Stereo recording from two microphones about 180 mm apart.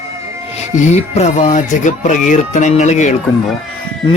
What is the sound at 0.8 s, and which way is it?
Speech, 40° left (ahead or behind).